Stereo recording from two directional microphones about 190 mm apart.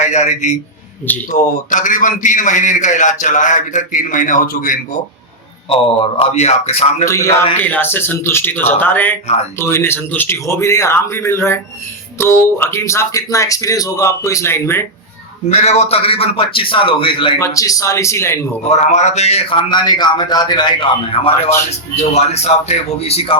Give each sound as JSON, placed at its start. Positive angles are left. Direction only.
{"t": 0.0, "sound": "a man's voice", "side_deg": 40}
{"t": 5.6, "sound": "speech", "side_deg": 30}
{"t": 7.0, "sound": "speech", "side_deg": 15}
{"t": 15.4, "sound": "a man's voice", "side_deg": 35}
{"t": 17.4, "sound": "speech", "side_deg": 15}
{"t": 18.7, "sound": "a man's voice", "side_deg": 40}